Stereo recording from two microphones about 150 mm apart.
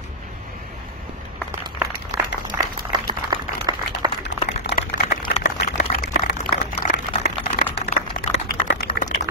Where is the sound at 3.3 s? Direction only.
25° right (ahead or behind).